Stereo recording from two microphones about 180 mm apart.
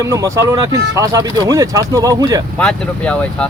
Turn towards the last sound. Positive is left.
turn(degrees=5)  # may be behind; listen again after turning